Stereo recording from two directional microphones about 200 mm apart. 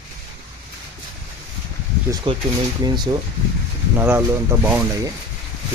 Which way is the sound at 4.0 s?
10° right (ahead or behind).